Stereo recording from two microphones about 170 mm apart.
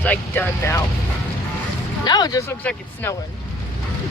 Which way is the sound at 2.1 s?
25° left (ahead or behind).